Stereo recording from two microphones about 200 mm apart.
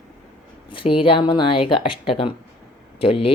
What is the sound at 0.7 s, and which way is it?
Speech, 25° left (ahead or behind).